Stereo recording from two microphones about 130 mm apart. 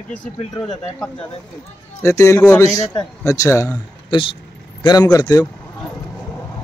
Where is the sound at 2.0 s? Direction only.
20° left (ahead or behind).